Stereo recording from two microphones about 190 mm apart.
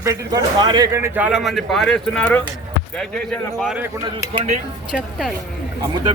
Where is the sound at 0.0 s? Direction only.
15° right (ahead or behind); by 2.4 s 5° left (ahead or behind).